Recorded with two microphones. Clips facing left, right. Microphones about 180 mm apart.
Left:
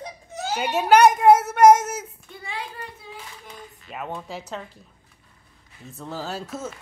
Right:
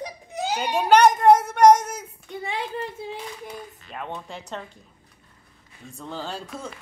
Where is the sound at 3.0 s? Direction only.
25° right (ahead or behind).